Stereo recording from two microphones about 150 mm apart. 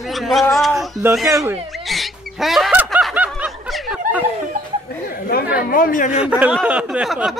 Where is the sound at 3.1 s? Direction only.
10° right (ahead or behind).